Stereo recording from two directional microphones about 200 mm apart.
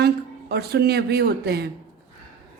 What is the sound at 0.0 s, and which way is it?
Speech, 55° right (ahead or behind).